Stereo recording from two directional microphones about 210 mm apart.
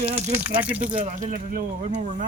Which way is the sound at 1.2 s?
40° right (ahead or behind).